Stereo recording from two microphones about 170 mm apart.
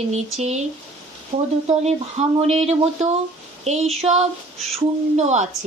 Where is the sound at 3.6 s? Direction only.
40° right (ahead or behind).